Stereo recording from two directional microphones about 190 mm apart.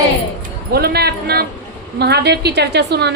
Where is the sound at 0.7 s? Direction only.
55° right (ahead or behind).